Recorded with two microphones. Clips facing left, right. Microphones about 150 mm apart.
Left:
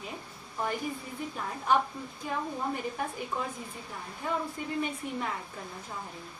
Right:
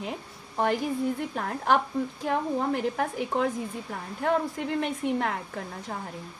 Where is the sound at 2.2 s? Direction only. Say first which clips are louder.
Right 5 dB; 85° right.